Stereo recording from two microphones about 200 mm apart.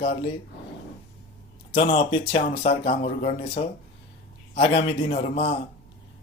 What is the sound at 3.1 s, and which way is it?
Speech, 35° left (ahead or behind).